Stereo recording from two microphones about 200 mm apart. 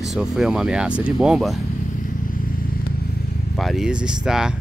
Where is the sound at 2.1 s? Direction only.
45° left (ahead or behind).